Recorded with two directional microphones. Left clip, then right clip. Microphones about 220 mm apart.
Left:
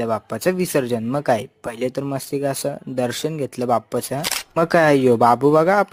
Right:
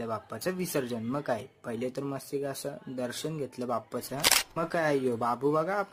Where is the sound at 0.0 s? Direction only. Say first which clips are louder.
Left 13 dB; 35° left (ahead or behind).